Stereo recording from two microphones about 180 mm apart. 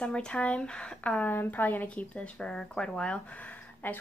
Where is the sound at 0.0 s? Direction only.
5° left (ahead or behind).